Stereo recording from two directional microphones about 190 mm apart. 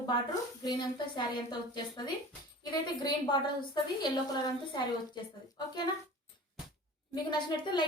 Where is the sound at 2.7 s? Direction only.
20° left (ahead or behind).